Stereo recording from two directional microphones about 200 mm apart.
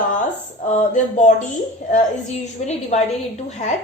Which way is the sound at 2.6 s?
35° left (ahead or behind).